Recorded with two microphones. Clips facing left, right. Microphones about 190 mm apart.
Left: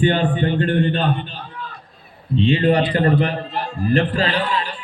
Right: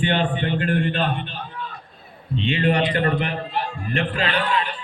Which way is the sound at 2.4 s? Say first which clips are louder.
Left 5 dB; 35° left (ahead or behind).